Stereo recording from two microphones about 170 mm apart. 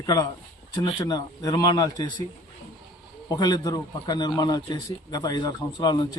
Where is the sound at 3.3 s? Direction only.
25° left (ahead or behind).